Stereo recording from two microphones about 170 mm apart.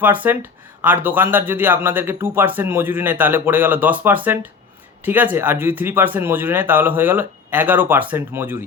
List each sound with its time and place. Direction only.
0.0 s speech: 10° right (ahead or behind)